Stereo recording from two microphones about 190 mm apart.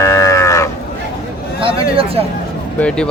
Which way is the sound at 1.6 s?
30° right (ahead or behind).